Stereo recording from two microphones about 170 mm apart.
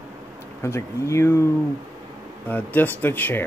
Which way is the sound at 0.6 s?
15° left (ahead or behind).